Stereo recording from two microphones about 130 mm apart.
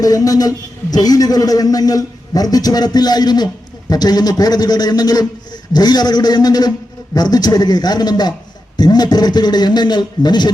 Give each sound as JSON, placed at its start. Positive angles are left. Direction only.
{"t": 0.0, "sound": "a man's voice", "side_deg": 30}